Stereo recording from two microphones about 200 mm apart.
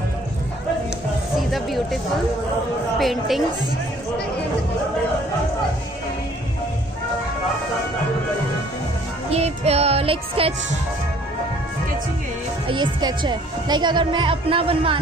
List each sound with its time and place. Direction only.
1.5 s music: centre (ahead or behind)
3.0 s a woman's voice: centre (ahead or behind)
9.3 s music: 30° right (ahead or behind)
12.6 s speech: 25° right (ahead or behind)